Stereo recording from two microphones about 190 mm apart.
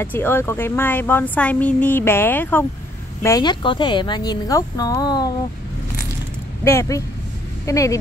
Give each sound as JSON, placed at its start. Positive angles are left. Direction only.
{"t": 0.0, "sound": "speech", "side_deg": 10}
{"t": 6.6, "sound": "speech", "side_deg": 15}